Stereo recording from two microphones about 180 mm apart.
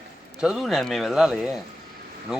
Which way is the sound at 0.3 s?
Centre (ahead or behind).